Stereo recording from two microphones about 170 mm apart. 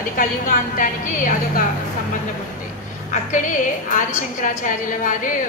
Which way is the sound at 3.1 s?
50° left (ahead or behind).